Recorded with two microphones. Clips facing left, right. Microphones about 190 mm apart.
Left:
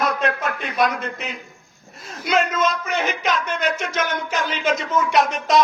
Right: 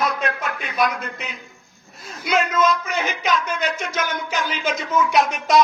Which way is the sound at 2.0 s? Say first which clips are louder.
Left 1 dB; centre (ahead or behind).